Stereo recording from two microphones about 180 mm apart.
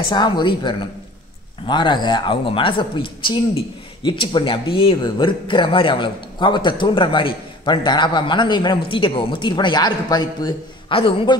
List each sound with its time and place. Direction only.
0.1 s speech: 25° left (ahead or behind)